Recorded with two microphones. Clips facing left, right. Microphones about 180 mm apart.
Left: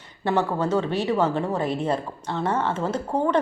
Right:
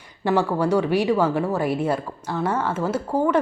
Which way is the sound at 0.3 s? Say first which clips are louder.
Right 3 dB; 10° right (ahead or behind).